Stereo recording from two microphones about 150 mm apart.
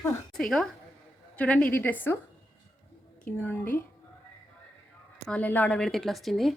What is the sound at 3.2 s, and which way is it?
Speech, 10° left (ahead or behind).